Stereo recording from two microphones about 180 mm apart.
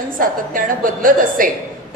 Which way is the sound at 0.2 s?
50° right (ahead or behind).